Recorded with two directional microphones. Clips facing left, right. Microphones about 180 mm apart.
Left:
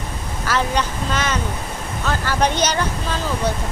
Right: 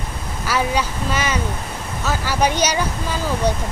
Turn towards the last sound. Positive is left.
turn(degrees=-10)  # may be behind; listen again after turning